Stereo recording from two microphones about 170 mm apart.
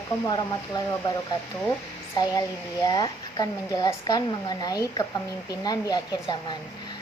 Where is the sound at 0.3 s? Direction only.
25° left (ahead or behind).